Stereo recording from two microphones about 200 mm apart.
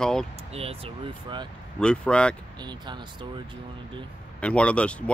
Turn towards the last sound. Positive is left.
turn(degrees=5)  # may be behind; listen again after turning